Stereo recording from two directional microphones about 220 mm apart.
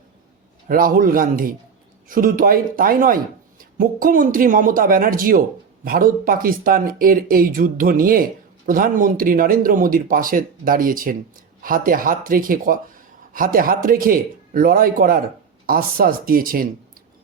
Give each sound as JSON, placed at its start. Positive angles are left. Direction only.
{"t": 0.7, "sound": "speech", "side_deg": -40}